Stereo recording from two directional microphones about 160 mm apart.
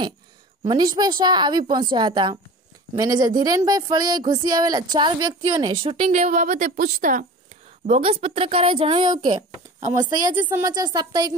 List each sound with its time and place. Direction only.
0.7 s speech: 25° right (ahead or behind)
6.0 s a woman's voice: 50° right (ahead or behind)
7.8 s a woman's voice: 40° right (ahead or behind)
9.8 s speech: 55° right (ahead or behind)
10.5 s speech: 25° right (ahead or behind)